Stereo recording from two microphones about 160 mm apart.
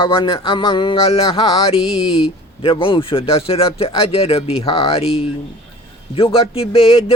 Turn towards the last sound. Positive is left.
turn(degrees=35)  # may be behind; listen again after turning